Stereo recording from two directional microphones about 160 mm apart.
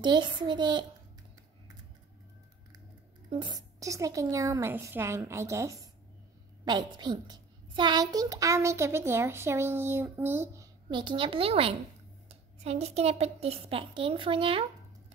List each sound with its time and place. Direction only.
0.0 s a woman's voice: 30° right (ahead or behind)
3.3 s a woman's voice: 30° right (ahead or behind)
10.9 s speech: 30° right (ahead or behind)